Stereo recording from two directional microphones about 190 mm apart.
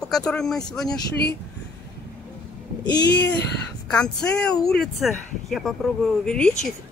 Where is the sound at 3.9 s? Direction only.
5° left (ahead or behind).